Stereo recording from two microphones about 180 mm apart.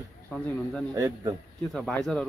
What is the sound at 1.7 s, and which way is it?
Speech, centre (ahead or behind).